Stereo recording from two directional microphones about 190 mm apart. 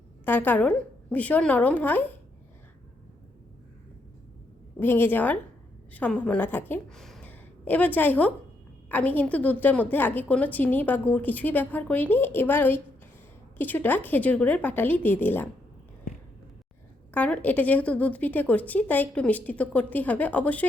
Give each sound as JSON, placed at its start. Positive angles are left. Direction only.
{"t": 0.3, "sound": "a woman's voice", "side_deg": 10}
{"t": 4.8, "sound": "a woman's voice", "side_deg": 10}
{"t": 17.2, "sound": "a woman's voice", "side_deg": 5}